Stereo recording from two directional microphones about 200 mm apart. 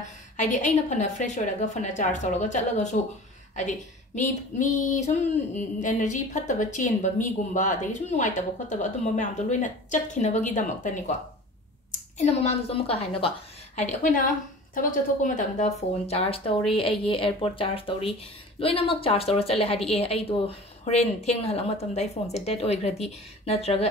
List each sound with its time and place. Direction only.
0.4 s a woman's voice: 35° left (ahead or behind)
12.2 s speech: 30° left (ahead or behind)
13.7 s a woman's voice: 40° left (ahead or behind)